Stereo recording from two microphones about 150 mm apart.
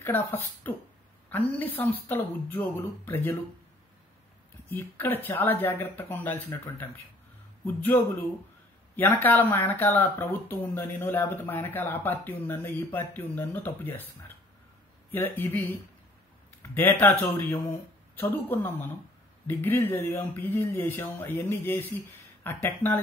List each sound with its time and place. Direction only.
0.7 s speech: 10° left (ahead or behind)
4.6 s speech: 15° left (ahead or behind)
15.0 s speech: 15° left (ahead or behind)